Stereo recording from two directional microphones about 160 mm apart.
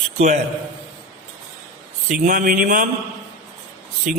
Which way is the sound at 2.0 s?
55° right (ahead or behind).